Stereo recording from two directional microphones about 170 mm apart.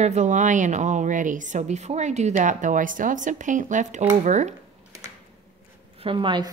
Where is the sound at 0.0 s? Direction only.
45° right (ahead or behind).